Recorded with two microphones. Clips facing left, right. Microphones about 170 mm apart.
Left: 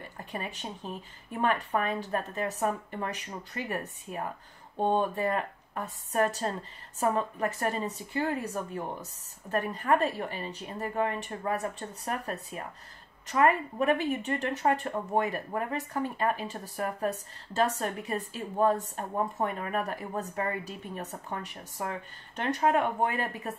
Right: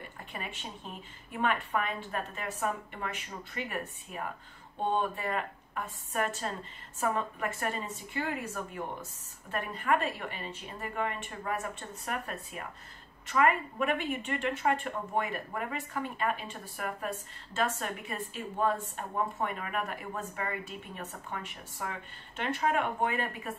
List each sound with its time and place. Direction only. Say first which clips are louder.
0.2 s speech: left 5 dB; 40° left (ahead or behind)